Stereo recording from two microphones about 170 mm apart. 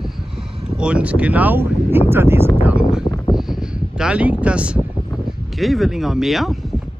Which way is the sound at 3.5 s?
5° right (ahead or behind).